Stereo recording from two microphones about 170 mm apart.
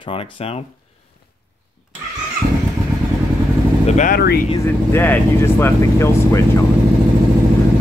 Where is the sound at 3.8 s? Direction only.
45° left (ahead or behind).